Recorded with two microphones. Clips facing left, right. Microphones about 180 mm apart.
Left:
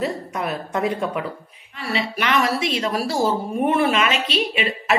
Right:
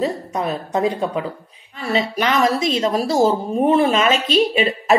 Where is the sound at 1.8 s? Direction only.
40° right (ahead or behind).